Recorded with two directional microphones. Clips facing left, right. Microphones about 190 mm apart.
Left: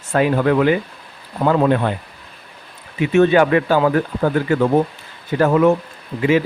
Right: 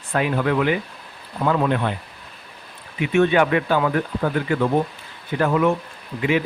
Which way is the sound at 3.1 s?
35° left (ahead or behind).